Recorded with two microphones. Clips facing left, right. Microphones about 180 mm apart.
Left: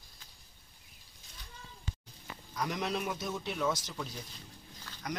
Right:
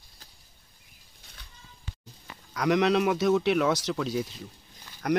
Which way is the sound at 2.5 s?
85° right.